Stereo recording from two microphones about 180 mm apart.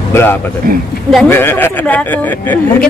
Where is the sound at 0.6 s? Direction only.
55° right (ahead or behind).